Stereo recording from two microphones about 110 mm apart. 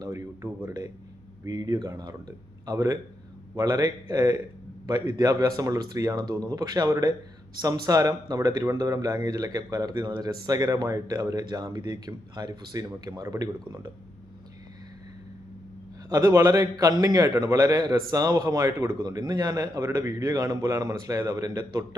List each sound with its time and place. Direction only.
0.0 s a man's voice: 30° right (ahead or behind)
16.0 s a man's voice: 30° right (ahead or behind)